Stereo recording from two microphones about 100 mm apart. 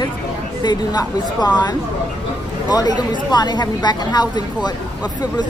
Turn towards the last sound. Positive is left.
turn(degrees=45)  # may be behind; listen again after turning